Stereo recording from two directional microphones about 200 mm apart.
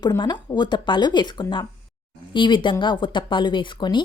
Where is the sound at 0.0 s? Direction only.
20° left (ahead or behind).